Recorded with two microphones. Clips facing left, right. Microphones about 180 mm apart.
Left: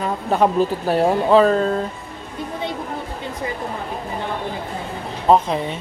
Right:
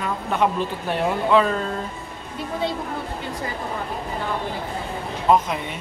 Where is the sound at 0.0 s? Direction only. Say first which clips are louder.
Left 4 dB; 35° left (ahead or behind).